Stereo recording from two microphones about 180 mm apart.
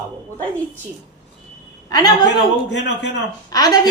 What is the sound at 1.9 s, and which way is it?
Speech, 20° left (ahead or behind).